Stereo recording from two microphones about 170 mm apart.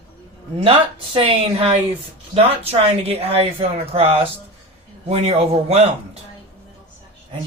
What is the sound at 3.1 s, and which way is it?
Speech, 35° right (ahead or behind).